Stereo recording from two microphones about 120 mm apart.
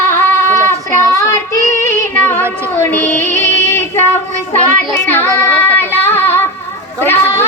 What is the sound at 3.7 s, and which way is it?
Child singing, 20° left (ahead or behind).